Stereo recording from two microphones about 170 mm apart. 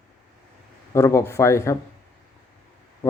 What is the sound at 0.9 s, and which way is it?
Speech, 20° left (ahead or behind).